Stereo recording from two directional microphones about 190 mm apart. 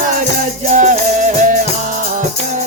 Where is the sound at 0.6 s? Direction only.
40° right (ahead or behind).